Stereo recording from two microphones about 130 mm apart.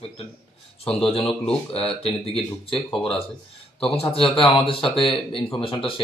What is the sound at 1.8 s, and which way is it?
Speech, 50° left (ahead or behind).